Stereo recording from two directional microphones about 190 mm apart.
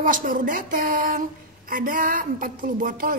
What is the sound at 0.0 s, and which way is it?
A woman's voice, 45° right (ahead or behind).